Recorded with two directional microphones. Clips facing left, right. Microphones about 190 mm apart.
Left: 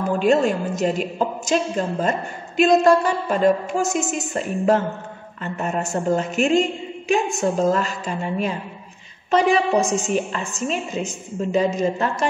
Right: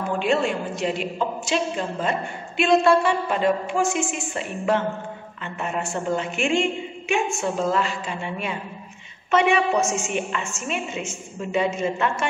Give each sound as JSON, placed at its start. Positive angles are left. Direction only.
{"t": 0.2, "sound": "a woman's voice", "side_deg": 40}